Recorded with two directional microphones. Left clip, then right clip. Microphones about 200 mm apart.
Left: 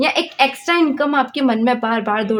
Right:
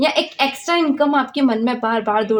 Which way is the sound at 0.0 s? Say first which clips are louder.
Left 1 dB; 40° left (ahead or behind).